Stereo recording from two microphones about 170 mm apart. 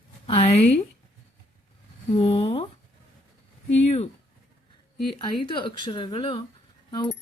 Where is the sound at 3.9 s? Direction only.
40° left (ahead or behind).